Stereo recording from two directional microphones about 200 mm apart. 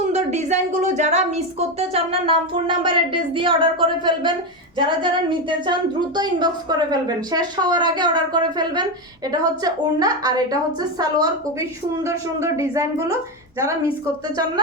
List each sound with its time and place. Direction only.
0.1 s speech: 35° right (ahead or behind)
6.1 s speech: 20° right (ahead or behind)